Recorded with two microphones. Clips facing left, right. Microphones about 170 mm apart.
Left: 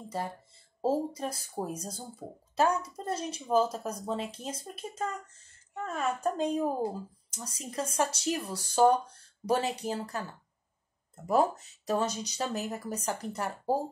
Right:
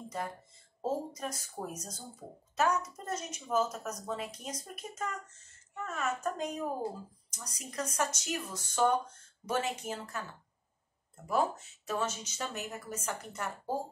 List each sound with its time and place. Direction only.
0.1 s a woman's voice: 30° left (ahead or behind)
11.2 s speech: 35° left (ahead or behind)